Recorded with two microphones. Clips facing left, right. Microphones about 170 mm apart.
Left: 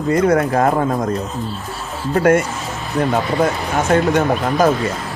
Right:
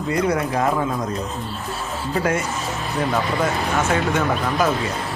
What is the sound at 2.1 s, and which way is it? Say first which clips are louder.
Speech: left 8 dB; 55° left (ahead or behind).